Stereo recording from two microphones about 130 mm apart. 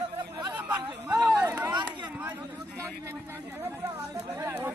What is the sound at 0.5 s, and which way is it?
Chatter, 15° right (ahead or behind).